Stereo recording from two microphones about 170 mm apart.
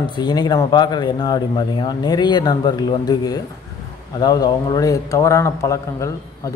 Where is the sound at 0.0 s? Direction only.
25° left (ahead or behind).